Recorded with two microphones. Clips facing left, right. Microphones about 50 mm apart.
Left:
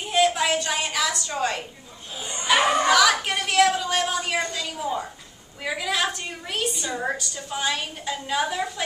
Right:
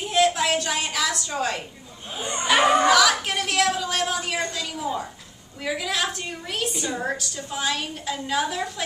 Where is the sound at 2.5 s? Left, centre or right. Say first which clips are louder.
Right 2 dB; centre.